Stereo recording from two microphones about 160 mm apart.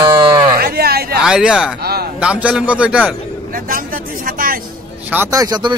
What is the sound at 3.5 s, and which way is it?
Speech, 60° right (ahead or behind).